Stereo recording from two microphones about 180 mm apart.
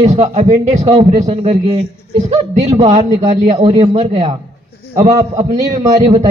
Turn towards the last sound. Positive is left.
turn(degrees=-40)  # may be behind; listen again after turning